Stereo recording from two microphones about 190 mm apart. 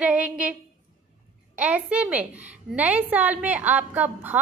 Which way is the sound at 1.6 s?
5° right (ahead or behind).